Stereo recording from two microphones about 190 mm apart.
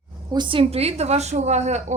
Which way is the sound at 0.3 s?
25° right (ahead or behind).